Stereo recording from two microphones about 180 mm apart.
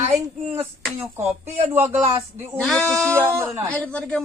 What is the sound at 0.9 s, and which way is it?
Speech, 15° right (ahead or behind).